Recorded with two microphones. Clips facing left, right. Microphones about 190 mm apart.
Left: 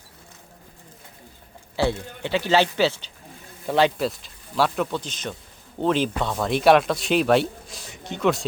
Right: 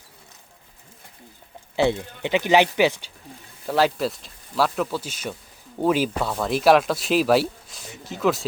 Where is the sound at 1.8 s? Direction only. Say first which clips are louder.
Right 3 dB; 20° right (ahead or behind).